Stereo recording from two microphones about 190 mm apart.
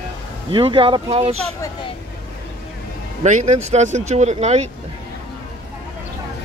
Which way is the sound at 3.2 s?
40° right (ahead or behind).